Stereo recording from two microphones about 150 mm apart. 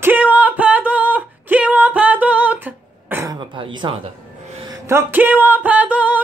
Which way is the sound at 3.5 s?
30° right (ahead or behind).